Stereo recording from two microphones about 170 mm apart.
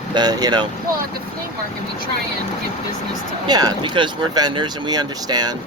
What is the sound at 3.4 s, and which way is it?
Speech, 25° right (ahead or behind).